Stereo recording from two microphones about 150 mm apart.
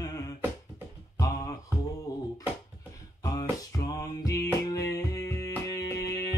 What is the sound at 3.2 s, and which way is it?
Music, 25° left (ahead or behind).